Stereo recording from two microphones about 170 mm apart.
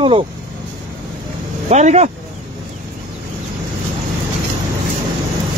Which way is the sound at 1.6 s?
45° right (ahead or behind).